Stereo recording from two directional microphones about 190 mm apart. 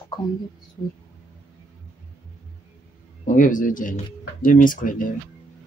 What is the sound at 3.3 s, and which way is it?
Speech, 45° left (ahead or behind).